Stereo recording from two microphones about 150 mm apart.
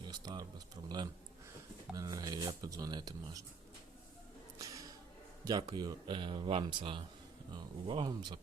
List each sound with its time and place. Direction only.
0.0 s speech: 30° right (ahead or behind)
4.5 s a sound: 20° right (ahead or behind)
5.7 s speech: 30° right (ahead or behind)